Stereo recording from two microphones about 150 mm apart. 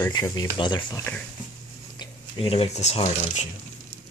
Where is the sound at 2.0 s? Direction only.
40° left (ahead or behind).